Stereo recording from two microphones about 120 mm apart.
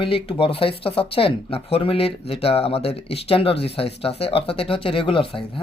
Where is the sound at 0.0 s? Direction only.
50° left (ahead or behind).